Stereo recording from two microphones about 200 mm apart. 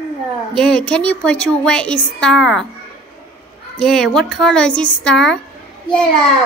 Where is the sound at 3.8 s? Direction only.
Centre (ahead or behind).